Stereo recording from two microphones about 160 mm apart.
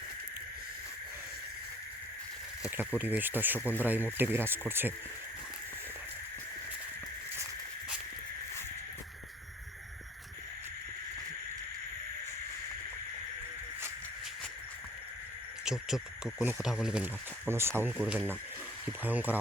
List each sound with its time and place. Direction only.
2.6 s speech: 10° right (ahead or behind)
15.6 s speech: 5° right (ahead or behind)